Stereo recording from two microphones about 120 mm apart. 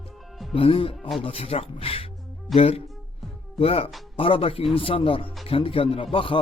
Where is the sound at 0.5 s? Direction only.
50° left (ahead or behind).